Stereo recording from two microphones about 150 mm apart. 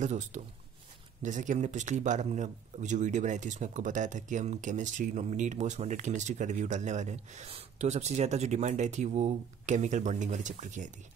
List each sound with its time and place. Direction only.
0.0 s speech: 55° right (ahead or behind)